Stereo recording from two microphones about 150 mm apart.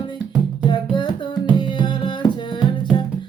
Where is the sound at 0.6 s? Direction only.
30° left (ahead or behind).